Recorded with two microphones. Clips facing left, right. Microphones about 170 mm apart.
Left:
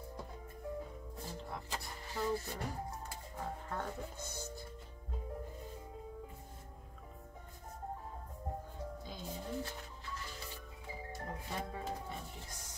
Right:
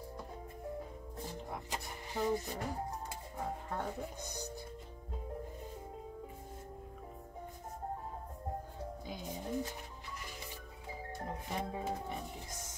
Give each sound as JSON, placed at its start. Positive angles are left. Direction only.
{"t": 1.2, "sound": "music", "side_deg": -20}
{"t": 3.1, "sound": "speech", "side_deg": -15}
{"t": 9.0, "sound": "speech", "side_deg": -15}
{"t": 11.2, "sound": "music", "side_deg": -20}